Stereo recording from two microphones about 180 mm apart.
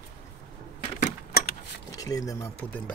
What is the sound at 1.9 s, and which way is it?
Speech, 20° left (ahead or behind).